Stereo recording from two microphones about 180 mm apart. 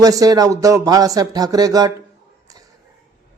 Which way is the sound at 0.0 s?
20° right (ahead or behind).